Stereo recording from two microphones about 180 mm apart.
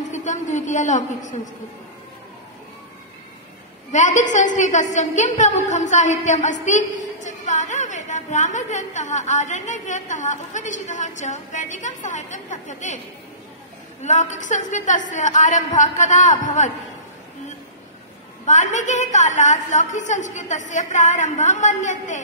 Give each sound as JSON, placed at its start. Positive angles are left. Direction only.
{"t": 0.1, "sound": "a woman's voice", "side_deg": 40}
{"t": 3.9, "sound": "a woman's voice", "side_deg": 45}
{"t": 14.0, "sound": "a woman's voice", "side_deg": 40}
{"t": 18.4, "sound": "a woman's voice", "side_deg": 40}